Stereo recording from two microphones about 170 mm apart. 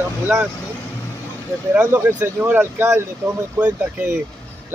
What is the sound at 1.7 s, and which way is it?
Speech, 10° right (ahead or behind).